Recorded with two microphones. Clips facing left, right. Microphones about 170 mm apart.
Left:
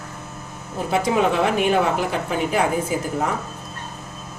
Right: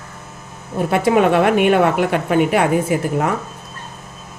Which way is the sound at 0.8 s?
60° right (ahead or behind).